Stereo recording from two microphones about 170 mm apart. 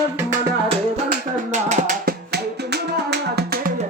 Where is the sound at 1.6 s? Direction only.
45° right (ahead or behind).